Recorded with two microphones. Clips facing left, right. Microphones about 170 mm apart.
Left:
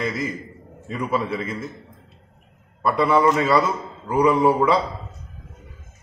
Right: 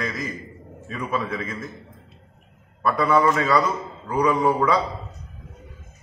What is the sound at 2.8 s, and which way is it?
Speech, 25° left (ahead or behind).